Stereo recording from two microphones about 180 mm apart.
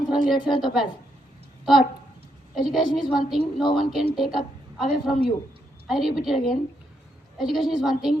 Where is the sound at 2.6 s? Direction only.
Centre (ahead or behind).